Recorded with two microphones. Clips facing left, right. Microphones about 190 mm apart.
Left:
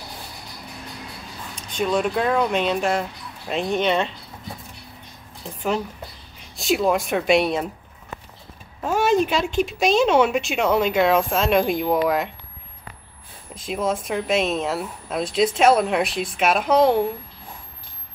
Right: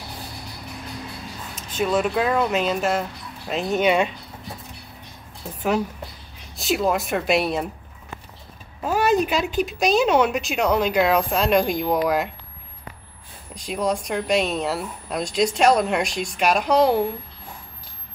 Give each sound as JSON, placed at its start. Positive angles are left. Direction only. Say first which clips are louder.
{"t": 1.5, "sound": "speech", "louder": "even", "side_deg": -5}
{"t": 6.5, "sound": "speech", "louder": "left 2 dB", "side_deg": 0}
{"t": 8.8, "sound": "speech", "louder": "left 1 dB", "side_deg": 0}
{"t": 13.6, "sound": "speech", "louder": "even", "side_deg": 0}